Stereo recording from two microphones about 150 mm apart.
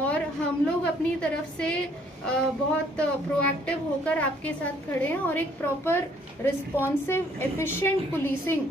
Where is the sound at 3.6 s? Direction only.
10° left (ahead or behind).